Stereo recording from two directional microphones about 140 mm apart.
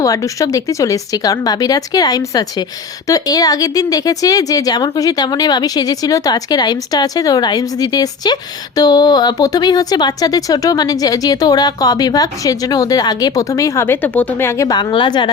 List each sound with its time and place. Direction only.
0.0 s speech: 25° left (ahead or behind)